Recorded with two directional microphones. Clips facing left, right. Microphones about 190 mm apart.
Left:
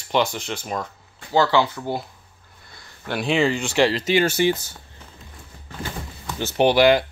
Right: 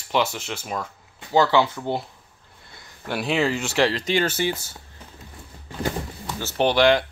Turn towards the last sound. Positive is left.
turn(degrees=5)  # may be behind; listen again after turning